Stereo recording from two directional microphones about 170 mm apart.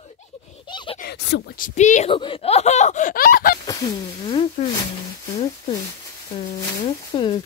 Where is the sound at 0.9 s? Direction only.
75° left (ahead or behind).